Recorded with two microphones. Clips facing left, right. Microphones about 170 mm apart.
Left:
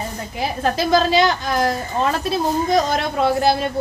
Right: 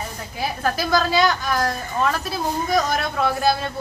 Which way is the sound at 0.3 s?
25° left (ahead or behind).